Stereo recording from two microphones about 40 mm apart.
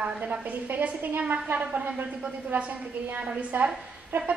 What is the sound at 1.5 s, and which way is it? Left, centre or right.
Speech, right.